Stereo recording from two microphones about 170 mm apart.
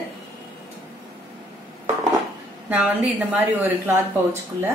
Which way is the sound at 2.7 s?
10° right (ahead or behind).